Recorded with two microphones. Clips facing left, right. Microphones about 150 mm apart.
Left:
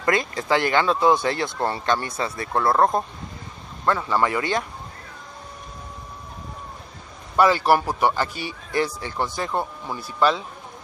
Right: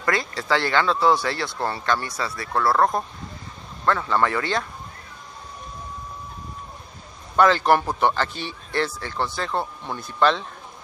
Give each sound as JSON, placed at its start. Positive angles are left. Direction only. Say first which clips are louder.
{"t": 0.0, "sound": "speech", "louder": "left 2 dB", "side_deg": 20}
{"t": 7.3, "sound": "speech", "louder": "even", "side_deg": 10}